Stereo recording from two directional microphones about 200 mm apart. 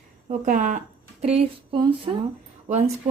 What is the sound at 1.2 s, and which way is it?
Speech, 30° right (ahead or behind).